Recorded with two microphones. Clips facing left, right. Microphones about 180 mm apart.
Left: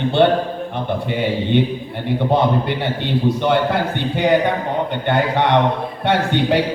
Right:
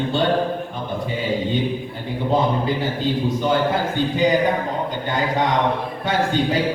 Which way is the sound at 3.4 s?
70° left (ahead or behind).